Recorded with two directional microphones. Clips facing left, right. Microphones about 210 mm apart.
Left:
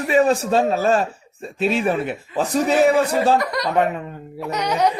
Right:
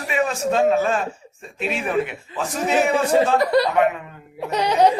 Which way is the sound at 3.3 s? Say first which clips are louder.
Right 5 dB; 30° right (ahead or behind).